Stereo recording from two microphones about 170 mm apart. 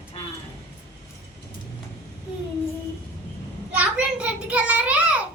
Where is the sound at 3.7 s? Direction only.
5° right (ahead or behind).